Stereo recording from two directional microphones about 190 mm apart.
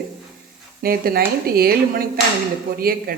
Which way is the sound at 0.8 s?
50° right (ahead or behind).